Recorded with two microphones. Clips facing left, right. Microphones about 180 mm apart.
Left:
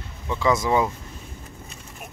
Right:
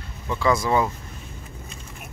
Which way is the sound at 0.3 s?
20° left (ahead or behind).